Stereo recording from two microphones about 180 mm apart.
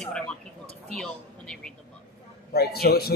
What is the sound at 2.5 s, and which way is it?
Speech, 60° left (ahead or behind).